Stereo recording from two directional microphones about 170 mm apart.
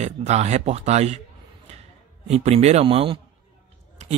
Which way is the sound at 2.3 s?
40° right (ahead or behind).